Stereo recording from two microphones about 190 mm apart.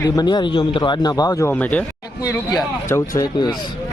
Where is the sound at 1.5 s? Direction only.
10° left (ahead or behind).